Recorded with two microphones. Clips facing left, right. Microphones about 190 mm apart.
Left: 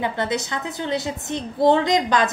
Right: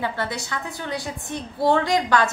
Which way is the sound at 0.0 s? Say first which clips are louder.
Left 4 dB; 20° left (ahead or behind).